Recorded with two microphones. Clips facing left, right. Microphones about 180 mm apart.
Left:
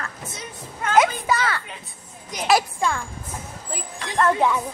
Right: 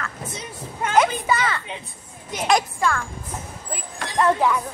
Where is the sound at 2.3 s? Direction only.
5° left (ahead or behind).